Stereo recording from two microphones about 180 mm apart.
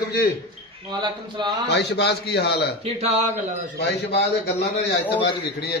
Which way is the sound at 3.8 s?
70° left (ahead or behind).